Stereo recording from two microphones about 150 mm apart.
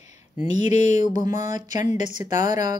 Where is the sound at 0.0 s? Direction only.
50° left (ahead or behind).